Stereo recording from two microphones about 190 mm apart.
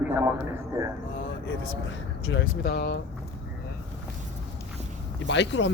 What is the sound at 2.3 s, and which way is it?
Speech, 65° left (ahead or behind).